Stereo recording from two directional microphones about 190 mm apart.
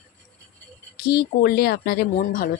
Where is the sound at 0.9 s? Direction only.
55° left (ahead or behind).